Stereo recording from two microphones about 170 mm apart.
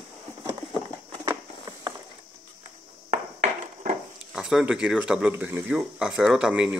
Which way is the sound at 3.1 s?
50° right (ahead or behind).